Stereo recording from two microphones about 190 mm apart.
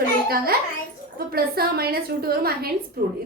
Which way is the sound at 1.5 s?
55° right (ahead or behind).